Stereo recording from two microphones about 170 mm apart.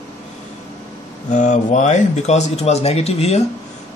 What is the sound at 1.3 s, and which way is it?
Speech, 45° left (ahead or behind).